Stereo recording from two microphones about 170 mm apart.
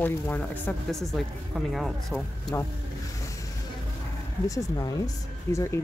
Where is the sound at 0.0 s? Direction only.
10° left (ahead or behind).